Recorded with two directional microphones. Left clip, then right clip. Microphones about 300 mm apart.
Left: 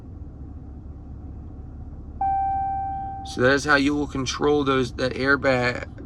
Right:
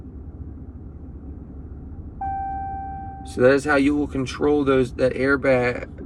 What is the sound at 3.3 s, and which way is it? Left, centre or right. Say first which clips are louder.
Speech: right 2 dB; centre.